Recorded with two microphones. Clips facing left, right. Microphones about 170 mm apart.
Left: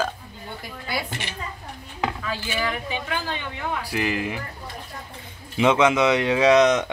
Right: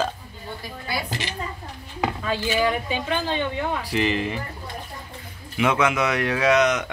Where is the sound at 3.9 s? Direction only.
5° left (ahead or behind).